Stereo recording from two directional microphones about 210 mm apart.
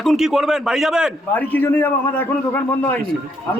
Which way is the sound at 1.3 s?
10° left (ahead or behind).